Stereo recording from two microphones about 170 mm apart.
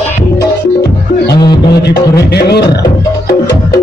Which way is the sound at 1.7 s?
70° left (ahead or behind).